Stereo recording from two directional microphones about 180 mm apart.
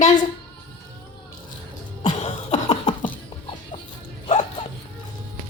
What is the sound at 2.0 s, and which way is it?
Cough, 35° left (ahead or behind).